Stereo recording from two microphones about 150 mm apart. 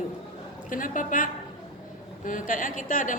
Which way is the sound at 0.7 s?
65° left (ahead or behind).